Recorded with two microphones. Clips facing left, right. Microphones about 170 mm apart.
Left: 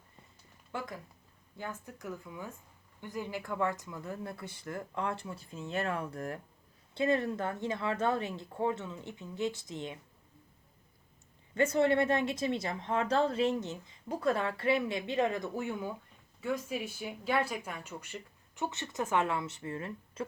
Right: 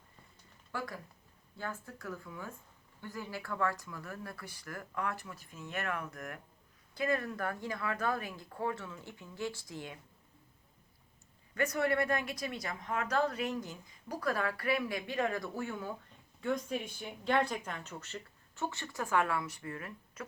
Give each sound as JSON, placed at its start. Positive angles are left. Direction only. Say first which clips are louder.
{"t": 0.7, "sound": "speech", "louder": "left 1 dB", "side_deg": 20}
{"t": 11.5, "sound": "speech", "louder": "left 5 dB", "side_deg": 25}
{"t": 16.4, "sound": "speech", "louder": "even", "side_deg": 5}